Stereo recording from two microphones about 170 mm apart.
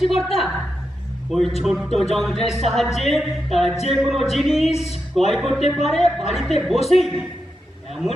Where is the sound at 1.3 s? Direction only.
Centre (ahead or behind).